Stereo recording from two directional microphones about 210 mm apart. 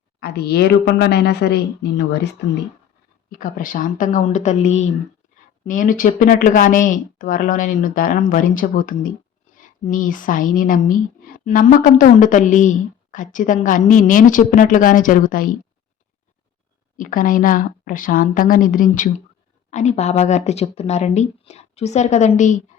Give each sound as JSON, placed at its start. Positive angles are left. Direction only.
{"t": 0.2, "sound": "a woman's voice", "side_deg": 50}
{"t": 3.2, "sound": "speech", "side_deg": 40}
{"t": 17.0, "sound": "speech", "side_deg": 40}